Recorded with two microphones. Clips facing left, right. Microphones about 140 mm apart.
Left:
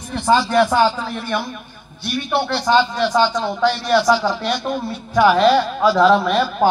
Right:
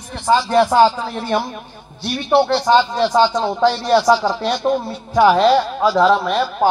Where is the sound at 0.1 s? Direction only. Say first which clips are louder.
Right 1 dB; 25° right (ahead or behind).